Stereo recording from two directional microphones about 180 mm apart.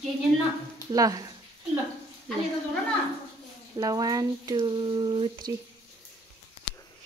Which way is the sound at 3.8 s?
20° right (ahead or behind).